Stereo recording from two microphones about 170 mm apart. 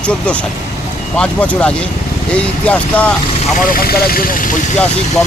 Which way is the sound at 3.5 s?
55° left (ahead or behind).